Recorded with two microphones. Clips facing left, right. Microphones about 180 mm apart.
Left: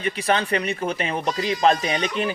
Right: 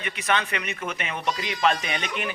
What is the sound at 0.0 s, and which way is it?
Speech, 35° left (ahead or behind).